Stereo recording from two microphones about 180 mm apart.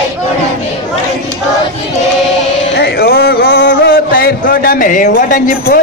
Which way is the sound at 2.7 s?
60° left (ahead or behind).